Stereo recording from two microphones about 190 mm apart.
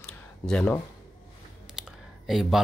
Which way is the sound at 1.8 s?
Centre (ahead or behind).